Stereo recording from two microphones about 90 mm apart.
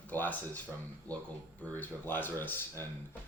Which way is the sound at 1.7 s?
20° left (ahead or behind).